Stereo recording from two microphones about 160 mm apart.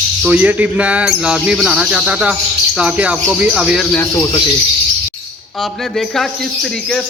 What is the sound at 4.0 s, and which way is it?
Speech, 15° left (ahead or behind).